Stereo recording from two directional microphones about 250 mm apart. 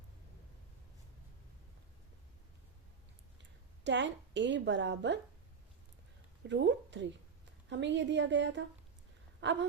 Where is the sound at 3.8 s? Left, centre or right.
Right.